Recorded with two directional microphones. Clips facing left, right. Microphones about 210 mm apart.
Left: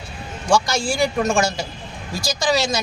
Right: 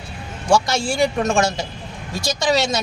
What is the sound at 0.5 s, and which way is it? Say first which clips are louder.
Speech: right 1 dB; 25° right (ahead or behind).